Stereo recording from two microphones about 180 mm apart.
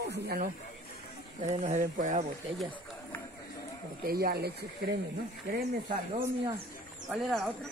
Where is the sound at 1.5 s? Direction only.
45° right (ahead or behind).